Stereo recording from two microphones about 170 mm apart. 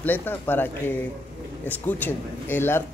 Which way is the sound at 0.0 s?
10° left (ahead or behind).